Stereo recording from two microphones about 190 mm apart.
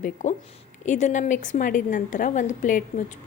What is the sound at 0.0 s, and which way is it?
A woman's voice, 40° left (ahead or behind).